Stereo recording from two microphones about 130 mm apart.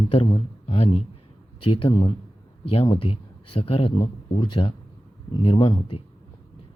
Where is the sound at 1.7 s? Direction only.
35° left (ahead or behind).